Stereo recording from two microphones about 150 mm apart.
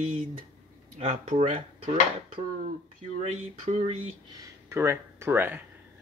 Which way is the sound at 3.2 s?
50° right (ahead or behind).